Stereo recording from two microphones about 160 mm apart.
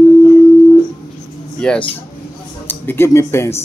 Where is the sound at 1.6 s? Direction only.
5° left (ahead or behind).